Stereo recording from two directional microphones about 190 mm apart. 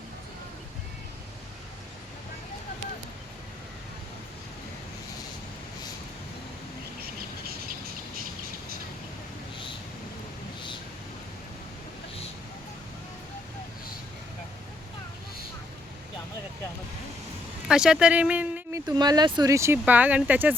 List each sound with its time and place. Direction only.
7.0 s bird: 55° right (ahead or behind)
17.7 s speech: 5° right (ahead or behind)
18.9 s speech: 20° right (ahead or behind)